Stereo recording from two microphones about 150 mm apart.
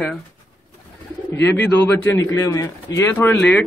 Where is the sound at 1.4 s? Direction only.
15° left (ahead or behind).